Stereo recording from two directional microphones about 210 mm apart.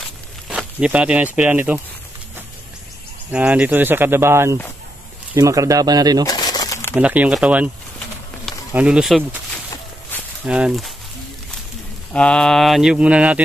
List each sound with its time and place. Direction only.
0.5 s speech: 5° right (ahead or behind)
3.3 s speech: 5° right (ahead or behind)
6.2 s bird: 20° left (ahead or behind)
7.0 s speech: 5° right (ahead or behind)
10.4 s mantra: 5° right (ahead or behind)
12.1 s mantra: 5° left (ahead or behind)